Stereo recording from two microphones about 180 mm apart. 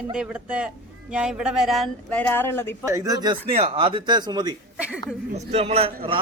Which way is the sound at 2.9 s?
20° right (ahead or behind).